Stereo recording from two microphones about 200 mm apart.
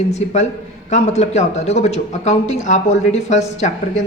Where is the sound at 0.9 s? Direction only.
35° left (ahead or behind).